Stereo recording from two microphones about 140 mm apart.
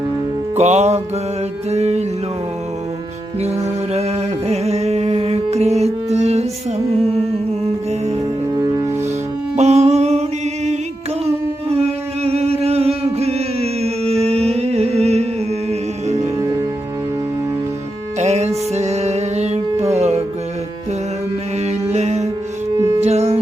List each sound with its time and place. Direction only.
0.5 s music: 55° right (ahead or behind)
3.4 s music: 50° right (ahead or behind)
9.6 s a sound: 55° right (ahead or behind)
14.4 s music: 50° right (ahead or behind)
18.2 s music: 55° right (ahead or behind)
21.7 s mantra: 55° right (ahead or behind)
23.0 s music: 50° right (ahead or behind)